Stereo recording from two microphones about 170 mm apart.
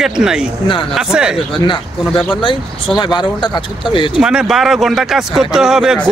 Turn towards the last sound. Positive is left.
turn(degrees=-5)  # may be behind; listen again after turning